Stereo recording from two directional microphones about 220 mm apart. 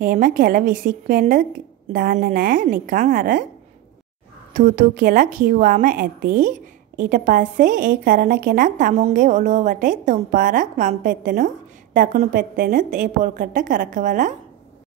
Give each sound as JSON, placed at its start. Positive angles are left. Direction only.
{"t": 0.0, "sound": "a woman's voice", "side_deg": -40}
{"t": 4.6, "sound": "a woman's voice", "side_deg": -35}